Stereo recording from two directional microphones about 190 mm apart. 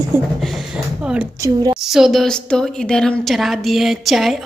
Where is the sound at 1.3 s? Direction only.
15° right (ahead or behind).